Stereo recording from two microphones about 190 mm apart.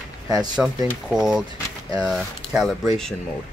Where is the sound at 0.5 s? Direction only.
5° right (ahead or behind).